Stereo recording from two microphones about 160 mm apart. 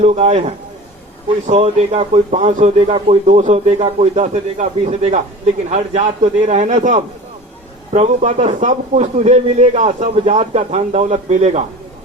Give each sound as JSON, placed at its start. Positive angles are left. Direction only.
{"t": 0.0, "sound": "a man's voice", "side_deg": -40}